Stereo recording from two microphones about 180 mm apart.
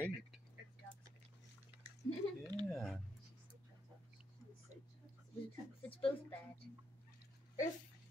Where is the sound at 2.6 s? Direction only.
Centre (ahead or behind).